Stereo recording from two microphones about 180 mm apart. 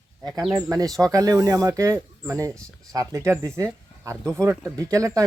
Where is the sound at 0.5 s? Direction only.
20° right (ahead or behind).